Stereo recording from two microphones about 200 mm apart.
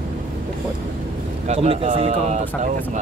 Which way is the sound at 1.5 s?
30° right (ahead or behind).